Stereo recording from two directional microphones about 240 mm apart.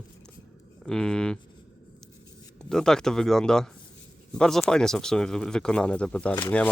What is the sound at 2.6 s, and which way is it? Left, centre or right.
Speech, centre.